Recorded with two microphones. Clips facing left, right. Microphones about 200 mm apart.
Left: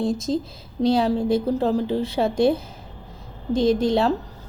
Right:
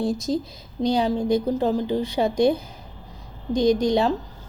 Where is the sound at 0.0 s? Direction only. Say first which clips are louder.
Left 1 dB; centre (ahead or behind).